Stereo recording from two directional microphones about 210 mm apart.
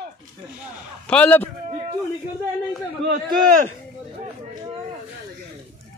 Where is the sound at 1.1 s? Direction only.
5° left (ahead or behind).